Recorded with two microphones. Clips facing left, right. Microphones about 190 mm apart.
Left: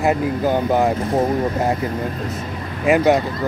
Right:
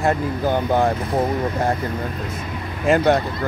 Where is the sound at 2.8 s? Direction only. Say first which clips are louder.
Left 2 dB; 5° left (ahead or behind).